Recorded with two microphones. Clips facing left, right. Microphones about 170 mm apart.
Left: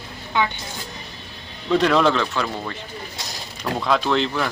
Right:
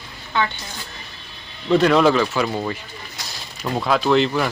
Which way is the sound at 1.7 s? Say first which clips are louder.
Right 3 dB; centre (ahead or behind).